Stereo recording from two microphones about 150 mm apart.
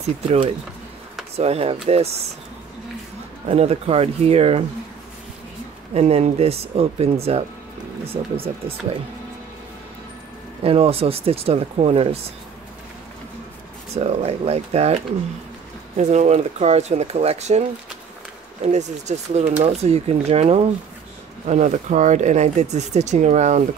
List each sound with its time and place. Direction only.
0.0 s speech: 45° right (ahead or behind)
3.4 s speech: 45° right (ahead or behind)
5.9 s speech: 45° right (ahead or behind)
10.6 s speech: 40° right (ahead or behind)
13.9 s speech: 45° right (ahead or behind)
16.0 s speech: 50° right (ahead or behind)